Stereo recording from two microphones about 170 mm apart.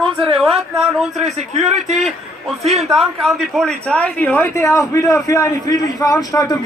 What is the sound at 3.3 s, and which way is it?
A man's voice, centre (ahead or behind).